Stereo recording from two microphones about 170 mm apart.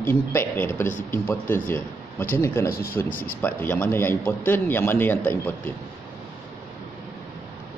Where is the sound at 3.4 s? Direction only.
10° left (ahead or behind).